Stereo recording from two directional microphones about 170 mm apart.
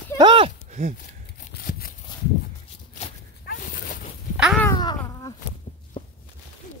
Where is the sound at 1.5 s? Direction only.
60° left (ahead or behind).